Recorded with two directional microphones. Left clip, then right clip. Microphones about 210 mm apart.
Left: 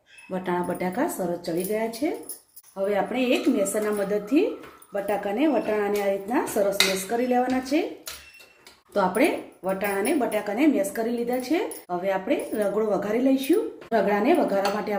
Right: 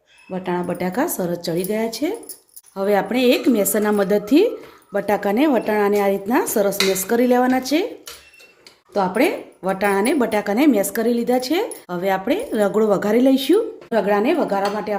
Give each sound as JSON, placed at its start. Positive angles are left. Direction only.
{"t": 0.3, "sound": "speech", "side_deg": -20}
{"t": 0.7, "sound": "a woman's voice", "side_deg": -35}
{"t": 8.9, "sound": "speech", "side_deg": -30}
{"t": 9.6, "sound": "a woman's voice", "side_deg": -55}
{"t": 13.9, "sound": "speech", "side_deg": -35}